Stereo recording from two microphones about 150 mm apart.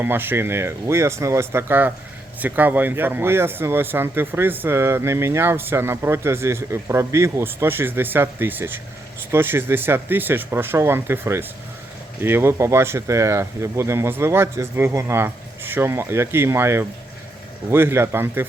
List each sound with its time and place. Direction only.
0.0 s speech: 15° right (ahead or behind)